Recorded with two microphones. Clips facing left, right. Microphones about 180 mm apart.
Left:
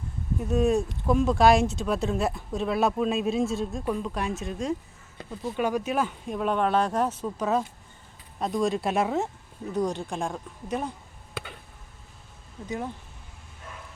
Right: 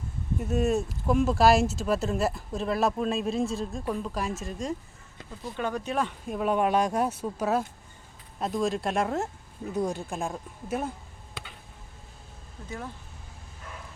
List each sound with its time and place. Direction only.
0.3 s speech: 5° right (ahead or behind)
5.5 s speech: 10° left (ahead or behind); by 10.9 s 5° right (ahead or behind)
12.6 s speech: 15° left (ahead or behind)